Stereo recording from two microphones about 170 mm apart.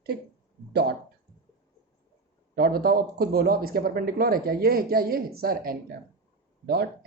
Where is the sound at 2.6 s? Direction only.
60° right (ahead or behind).